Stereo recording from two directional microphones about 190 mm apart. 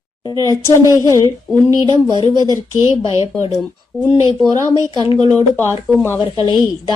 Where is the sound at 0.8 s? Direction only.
15° right (ahead or behind).